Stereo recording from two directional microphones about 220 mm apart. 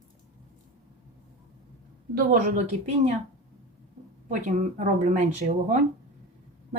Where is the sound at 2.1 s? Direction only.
40° right (ahead or behind).